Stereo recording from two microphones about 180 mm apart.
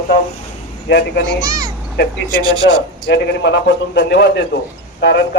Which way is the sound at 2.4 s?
25° right (ahead or behind).